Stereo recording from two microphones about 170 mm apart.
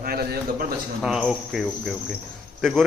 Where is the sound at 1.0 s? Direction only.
Centre (ahead or behind).